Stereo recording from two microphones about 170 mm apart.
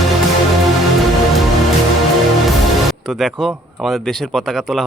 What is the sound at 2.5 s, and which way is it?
Speech, centre (ahead or behind).